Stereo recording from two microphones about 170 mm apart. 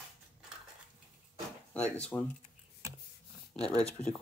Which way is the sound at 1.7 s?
10° left (ahead or behind).